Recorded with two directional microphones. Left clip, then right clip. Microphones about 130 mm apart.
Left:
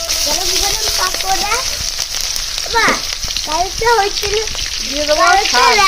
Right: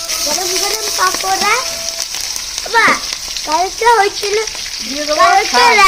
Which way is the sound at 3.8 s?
90° right.